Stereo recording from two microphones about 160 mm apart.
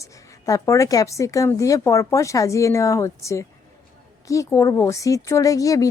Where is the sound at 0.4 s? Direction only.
20° left (ahead or behind).